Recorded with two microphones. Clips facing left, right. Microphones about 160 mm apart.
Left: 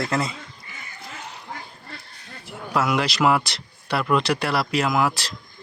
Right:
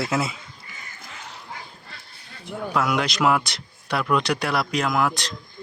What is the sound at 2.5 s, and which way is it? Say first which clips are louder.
Speech: even; centre (ahead or behind).